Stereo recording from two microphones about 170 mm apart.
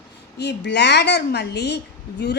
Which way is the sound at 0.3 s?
80° left.